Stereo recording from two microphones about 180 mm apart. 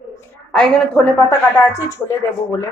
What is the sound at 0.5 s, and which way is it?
A woman's voice, 5° left (ahead or behind).